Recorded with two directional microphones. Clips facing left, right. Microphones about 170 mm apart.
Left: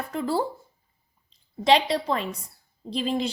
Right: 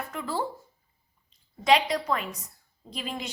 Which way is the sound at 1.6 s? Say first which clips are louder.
Left 2 dB; 30° left (ahead or behind).